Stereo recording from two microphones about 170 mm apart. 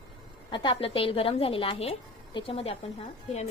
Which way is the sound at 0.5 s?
30° left (ahead or behind).